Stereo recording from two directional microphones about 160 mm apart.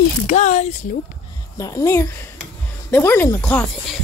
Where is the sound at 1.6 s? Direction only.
20° left (ahead or behind).